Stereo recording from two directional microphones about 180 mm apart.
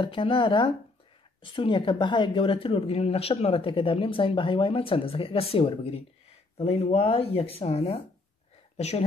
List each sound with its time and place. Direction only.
0.0 s speech: 30° left (ahead or behind)